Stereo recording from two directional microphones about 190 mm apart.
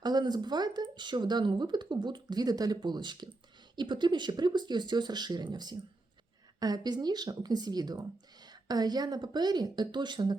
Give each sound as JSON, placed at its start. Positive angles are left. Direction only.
{"t": 0.0, "sound": "speech", "side_deg": -20}